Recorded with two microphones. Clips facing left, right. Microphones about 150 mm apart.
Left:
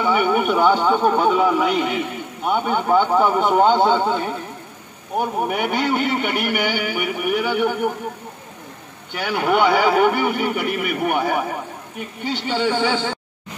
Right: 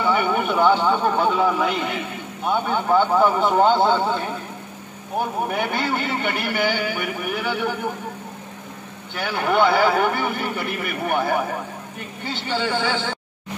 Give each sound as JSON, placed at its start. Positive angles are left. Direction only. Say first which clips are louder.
{"t": 0.0, "sound": "a man's voice", "louder": "left 2 dB", "side_deg": 15}
{"t": 5.5, "sound": "a man's voice", "louder": "left 3 dB", "side_deg": 15}
{"t": 9.1, "sound": "a man's voice", "louder": "left 2 dB", "side_deg": 15}